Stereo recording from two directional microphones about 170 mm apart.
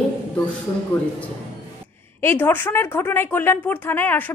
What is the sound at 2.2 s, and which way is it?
A woman's voice, 15° left (ahead or behind).